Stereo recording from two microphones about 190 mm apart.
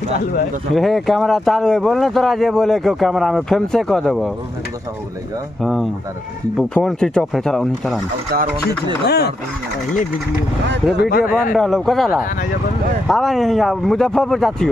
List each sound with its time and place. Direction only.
0.7 s speech: centre (ahead or behind)
5.6 s speech: centre (ahead or behind)
9.0 s speech: 60° left (ahead or behind)
11.0 s speech: 50° left (ahead or behind)
11.5 s speech: centre (ahead or behind)